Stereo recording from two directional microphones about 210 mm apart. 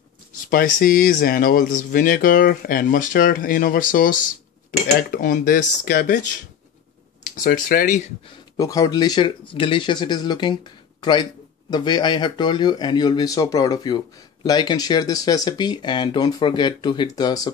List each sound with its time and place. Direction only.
0.5 s speech: 45° left (ahead or behind)
7.4 s speech: 40° left (ahead or behind)
8.5 s speech: 15° left (ahead or behind)